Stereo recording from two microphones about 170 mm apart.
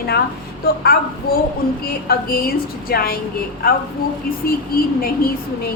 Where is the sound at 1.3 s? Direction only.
60° left (ahead or behind).